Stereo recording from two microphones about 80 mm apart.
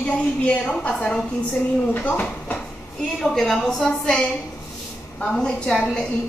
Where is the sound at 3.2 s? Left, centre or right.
Centre.